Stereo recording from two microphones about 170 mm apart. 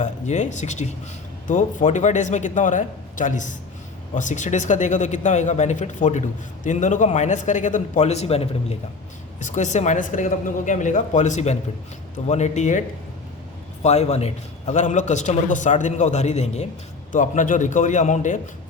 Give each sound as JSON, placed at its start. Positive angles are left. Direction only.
{"t": 0.0, "sound": "a man's voice", "side_deg": 45}
{"t": 13.8, "sound": "a man's voice", "side_deg": 40}